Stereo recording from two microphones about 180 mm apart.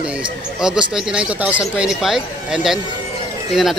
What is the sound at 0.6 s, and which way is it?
Speech, 5° right (ahead or behind).